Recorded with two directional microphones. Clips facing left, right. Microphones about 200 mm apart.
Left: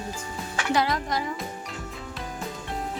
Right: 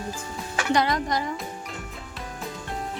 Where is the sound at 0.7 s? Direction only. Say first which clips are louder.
Right 2 dB; 5° left (ahead or behind).